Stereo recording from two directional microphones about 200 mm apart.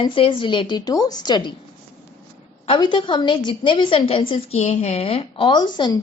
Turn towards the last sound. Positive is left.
turn(degrees=20)  # may be behind; listen again after turning